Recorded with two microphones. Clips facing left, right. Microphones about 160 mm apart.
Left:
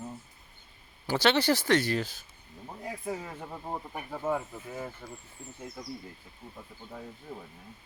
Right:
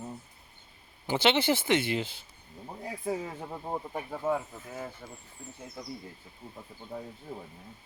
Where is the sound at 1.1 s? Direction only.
20° right (ahead or behind).